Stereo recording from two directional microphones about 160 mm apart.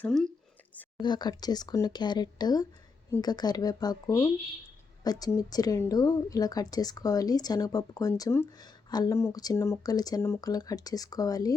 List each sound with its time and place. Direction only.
0.0 s speech: 5° left (ahead or behind)
1.0 s a woman's voice: 25° left (ahead or behind)